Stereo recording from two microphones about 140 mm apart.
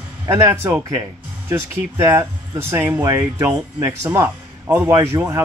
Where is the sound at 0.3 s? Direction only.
20° right (ahead or behind).